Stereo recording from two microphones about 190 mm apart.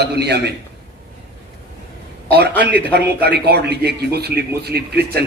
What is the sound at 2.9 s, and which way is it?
A man's voice, 60° right (ahead or behind).